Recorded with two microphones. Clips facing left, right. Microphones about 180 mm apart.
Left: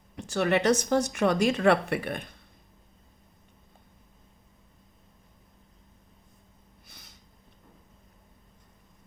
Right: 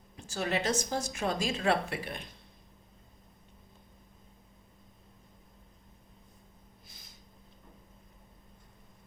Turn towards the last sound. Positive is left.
turn(degrees=65)  # may be behind; listen again after turning